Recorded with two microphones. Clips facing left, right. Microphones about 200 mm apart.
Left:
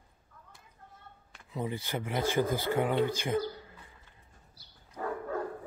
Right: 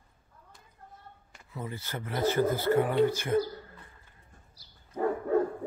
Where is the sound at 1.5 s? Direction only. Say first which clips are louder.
Left 4 dB; 20° left (ahead or behind).